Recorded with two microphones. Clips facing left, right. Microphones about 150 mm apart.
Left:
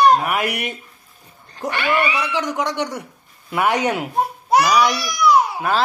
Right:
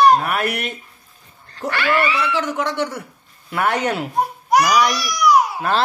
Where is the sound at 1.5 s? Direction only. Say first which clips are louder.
Right 1 dB; 15° left (ahead or behind).